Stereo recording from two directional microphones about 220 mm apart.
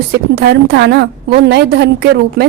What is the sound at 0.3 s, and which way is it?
A woman's voice, 50° right (ahead or behind).